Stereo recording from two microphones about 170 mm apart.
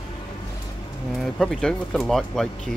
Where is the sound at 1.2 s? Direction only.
Centre (ahead or behind).